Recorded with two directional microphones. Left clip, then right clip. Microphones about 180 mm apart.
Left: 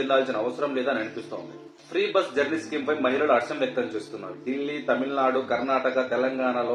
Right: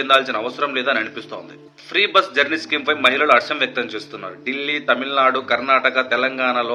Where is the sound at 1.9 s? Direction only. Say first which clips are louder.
Right 8 dB; 15° right (ahead or behind).